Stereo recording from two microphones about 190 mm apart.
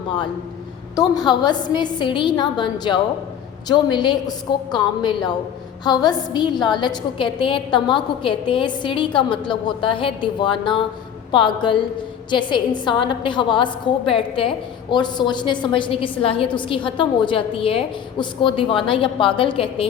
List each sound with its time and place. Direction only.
0.9 s a woman's voice: 20° left (ahead or behind)